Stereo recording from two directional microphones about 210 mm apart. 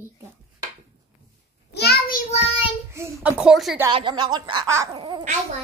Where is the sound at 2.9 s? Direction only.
10° right (ahead or behind).